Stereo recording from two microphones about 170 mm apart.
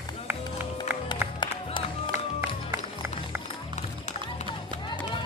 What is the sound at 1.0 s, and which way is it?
Music, 25° left (ahead or behind).